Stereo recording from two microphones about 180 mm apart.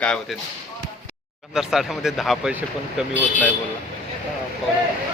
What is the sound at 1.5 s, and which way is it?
Speech, centre (ahead or behind).